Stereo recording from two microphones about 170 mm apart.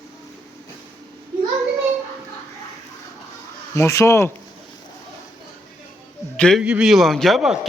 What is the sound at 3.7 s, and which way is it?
Speech, 15° left (ahead or behind).